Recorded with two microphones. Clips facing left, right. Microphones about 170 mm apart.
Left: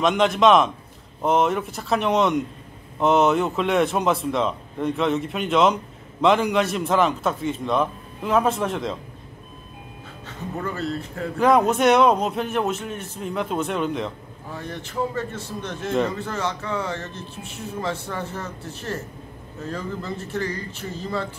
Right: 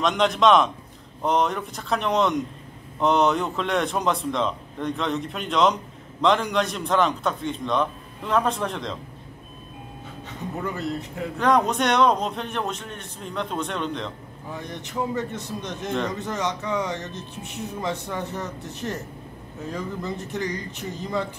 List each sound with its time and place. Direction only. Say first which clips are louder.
0.0 s a man's voice: left 2 dB; centre (ahead or behind)
10.2 s speech: left 1 dB; 15° right (ahead or behind)
11.3 s a man's voice: left 3 dB; 5° left (ahead or behind)
14.5 s speech: left 1 dB; 15° right (ahead or behind)